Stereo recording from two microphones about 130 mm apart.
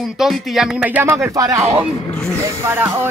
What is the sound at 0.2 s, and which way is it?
Speech, 5° right (ahead or behind).